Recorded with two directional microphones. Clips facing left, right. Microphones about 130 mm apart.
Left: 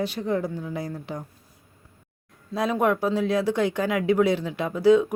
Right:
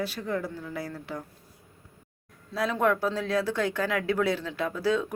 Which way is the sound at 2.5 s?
15° left (ahead or behind).